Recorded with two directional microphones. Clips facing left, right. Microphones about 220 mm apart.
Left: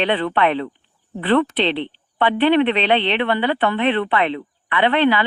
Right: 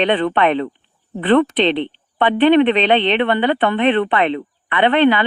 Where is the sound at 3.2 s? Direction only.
55° right (ahead or behind).